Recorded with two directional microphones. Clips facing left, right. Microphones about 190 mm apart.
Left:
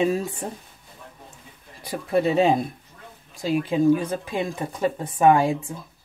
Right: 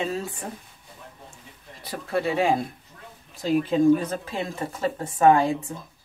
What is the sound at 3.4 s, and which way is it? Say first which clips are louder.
Speech: right 1 dB; 10° left (ahead or behind).